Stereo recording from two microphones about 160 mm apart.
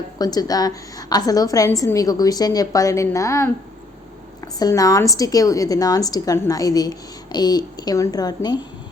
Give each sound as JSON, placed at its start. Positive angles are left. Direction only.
{"t": 0.2, "sound": "a woman's voice", "side_deg": 25}
{"t": 4.6, "sound": "a woman's voice", "side_deg": 20}